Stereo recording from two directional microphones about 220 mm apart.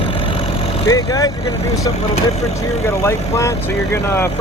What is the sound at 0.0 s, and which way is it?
Vehicle, 25° left (ahead or behind).